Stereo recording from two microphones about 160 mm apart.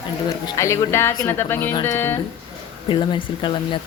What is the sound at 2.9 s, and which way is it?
Speech, 30° left (ahead or behind).